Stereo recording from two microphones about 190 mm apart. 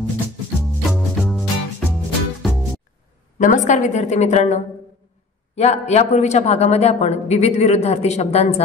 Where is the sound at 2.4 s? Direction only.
Centre (ahead or behind).